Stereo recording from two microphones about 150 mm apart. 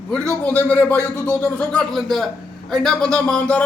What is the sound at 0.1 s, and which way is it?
A man's voice, 10° left (ahead or behind).